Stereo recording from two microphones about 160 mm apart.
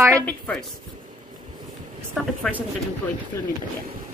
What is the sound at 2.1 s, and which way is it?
Speech, 5° left (ahead or behind).